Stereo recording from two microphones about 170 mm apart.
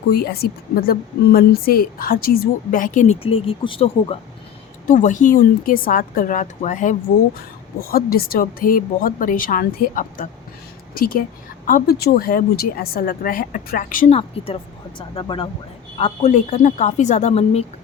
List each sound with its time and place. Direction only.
0.1 s a woman's voice: 65° left (ahead or behind); by 4.2 s 30° left (ahead or behind)
4.9 s a woman's voice: 50° left (ahead or behind)
7.9 s a woman's voice: 60° left (ahead or behind)
14.2 s speech: 35° left (ahead or behind)
16.0 s a woman's voice: 40° left (ahead or behind)